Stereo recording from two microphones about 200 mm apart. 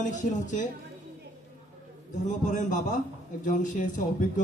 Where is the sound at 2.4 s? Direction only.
40° left (ahead or behind).